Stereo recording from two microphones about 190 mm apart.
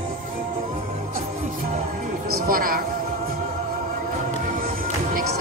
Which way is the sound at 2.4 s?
50° right (ahead or behind).